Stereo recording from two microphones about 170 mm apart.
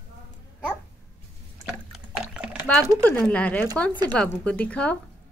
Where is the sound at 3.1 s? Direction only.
5° left (ahead or behind).